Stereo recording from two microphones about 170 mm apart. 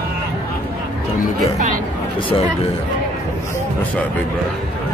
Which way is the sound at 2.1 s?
30° left (ahead or behind).